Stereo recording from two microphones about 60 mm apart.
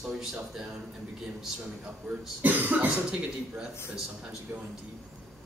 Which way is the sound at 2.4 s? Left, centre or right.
Right.